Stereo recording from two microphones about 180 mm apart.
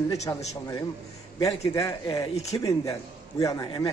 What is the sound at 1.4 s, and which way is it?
A man's voice, 15° left (ahead or behind).